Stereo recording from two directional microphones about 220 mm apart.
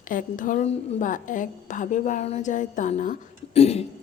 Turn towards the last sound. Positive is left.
turn(degrees=25)  # may be behind; listen again after turning